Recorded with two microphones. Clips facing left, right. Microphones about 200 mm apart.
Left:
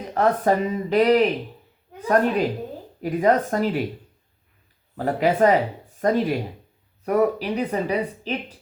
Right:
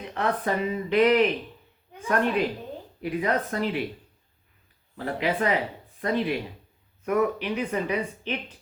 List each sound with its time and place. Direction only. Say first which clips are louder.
0.0 s speech: left 7 dB; 40° left (ahead or behind)
4.9 s speech: left 7 dB; 45° left (ahead or behind)